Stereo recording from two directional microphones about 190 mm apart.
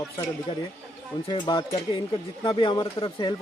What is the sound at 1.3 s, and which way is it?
Speech, 25° left (ahead or behind).